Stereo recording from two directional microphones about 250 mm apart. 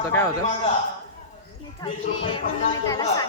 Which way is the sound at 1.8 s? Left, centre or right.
Left.